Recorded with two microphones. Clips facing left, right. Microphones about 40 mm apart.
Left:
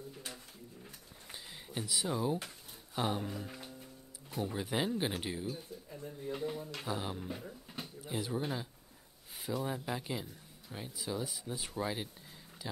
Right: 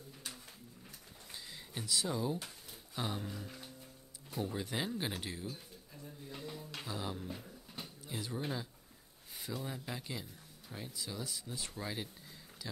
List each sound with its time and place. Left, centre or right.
1.3 s a sound: centre
3.0 s speech: centre
6.2 s speech: left
6.8 s speech: centre
7.3 s speech: left
8.0 s speech: centre
9.7 s speech: centre